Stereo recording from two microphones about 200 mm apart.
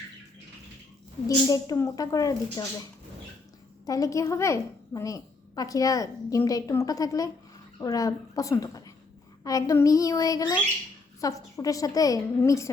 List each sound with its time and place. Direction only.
1.5 s a woman's voice: 15° left (ahead or behind)
3.8 s a woman's voice: 15° left (ahead or behind)